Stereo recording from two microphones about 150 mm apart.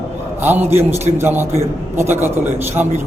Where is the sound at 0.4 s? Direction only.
15° right (ahead or behind).